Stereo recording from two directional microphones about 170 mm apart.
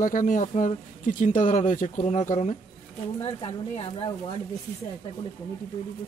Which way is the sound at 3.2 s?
35° left (ahead or behind).